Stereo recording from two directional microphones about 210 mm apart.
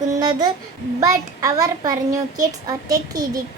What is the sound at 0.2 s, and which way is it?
A child's voice, 20° right (ahead or behind).